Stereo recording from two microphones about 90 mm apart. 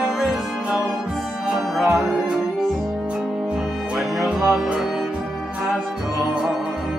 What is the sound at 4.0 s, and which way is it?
Music, 5° right (ahead or behind).